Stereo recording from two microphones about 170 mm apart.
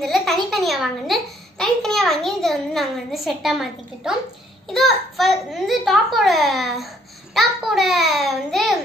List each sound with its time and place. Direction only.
0.0 s a woman's voice: centre (ahead or behind)